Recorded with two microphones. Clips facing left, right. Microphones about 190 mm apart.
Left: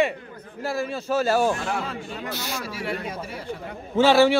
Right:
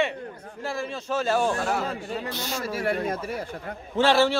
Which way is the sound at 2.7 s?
50° right (ahead or behind).